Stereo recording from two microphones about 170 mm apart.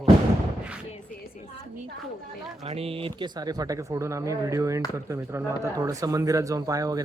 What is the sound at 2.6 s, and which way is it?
Speech, 35° right (ahead or behind).